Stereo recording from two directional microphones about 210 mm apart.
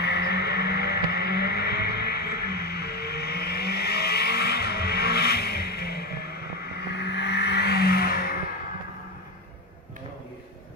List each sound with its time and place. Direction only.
0.0 s vehicle: 50° left (ahead or behind)